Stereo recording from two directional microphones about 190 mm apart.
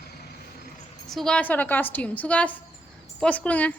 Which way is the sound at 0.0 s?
55° left (ahead or behind).